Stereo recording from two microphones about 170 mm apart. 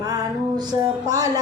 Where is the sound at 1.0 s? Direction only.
20° right (ahead or behind).